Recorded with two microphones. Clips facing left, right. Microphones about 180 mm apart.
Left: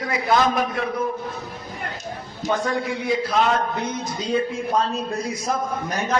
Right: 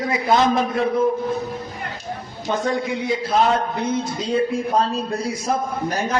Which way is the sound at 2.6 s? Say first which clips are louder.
Right 2 dB; 25° right (ahead or behind).